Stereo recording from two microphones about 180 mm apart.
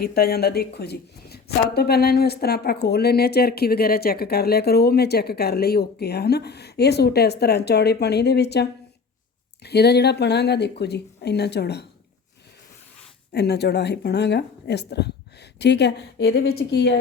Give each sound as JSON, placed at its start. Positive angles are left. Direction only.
{"t": 0.0, "sound": "speech", "side_deg": 60}
{"t": 9.6, "sound": "speech", "side_deg": 65}
{"t": 13.3, "sound": "speech", "side_deg": 65}